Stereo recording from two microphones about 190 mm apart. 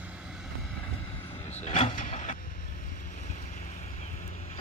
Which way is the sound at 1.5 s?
35° left (ahead or behind).